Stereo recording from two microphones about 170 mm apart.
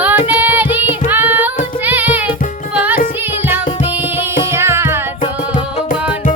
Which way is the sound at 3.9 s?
10° right (ahead or behind).